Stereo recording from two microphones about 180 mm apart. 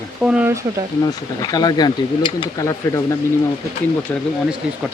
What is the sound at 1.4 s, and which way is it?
Speech, 20° left (ahead or behind).